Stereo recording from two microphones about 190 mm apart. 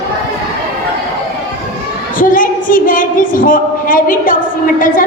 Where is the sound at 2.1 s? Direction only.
45° left (ahead or behind).